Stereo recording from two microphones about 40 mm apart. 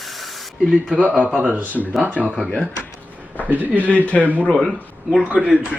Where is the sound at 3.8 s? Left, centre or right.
Left.